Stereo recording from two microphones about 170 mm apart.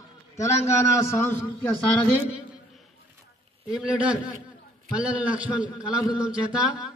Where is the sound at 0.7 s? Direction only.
15° left (ahead or behind).